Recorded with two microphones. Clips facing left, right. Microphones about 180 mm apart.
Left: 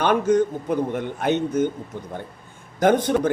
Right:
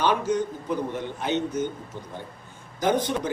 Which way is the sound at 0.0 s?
55° left (ahead or behind).